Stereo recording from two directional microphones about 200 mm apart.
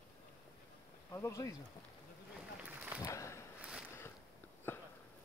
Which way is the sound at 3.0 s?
15° left (ahead or behind).